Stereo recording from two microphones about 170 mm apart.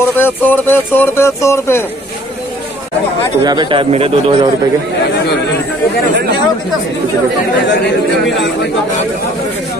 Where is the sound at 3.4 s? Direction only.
25° right (ahead or behind).